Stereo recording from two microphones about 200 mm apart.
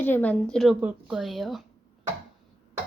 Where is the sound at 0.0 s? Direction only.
10° left (ahead or behind).